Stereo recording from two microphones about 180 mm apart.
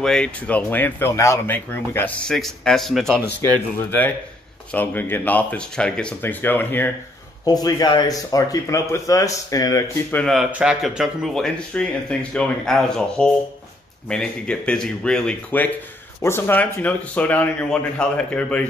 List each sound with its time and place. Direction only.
0.0 s speech: 5° left (ahead or behind)
4.7 s speech: 10° left (ahead or behind)
7.4 s speech: 20° left (ahead or behind)
10.1 s speech: centre (ahead or behind)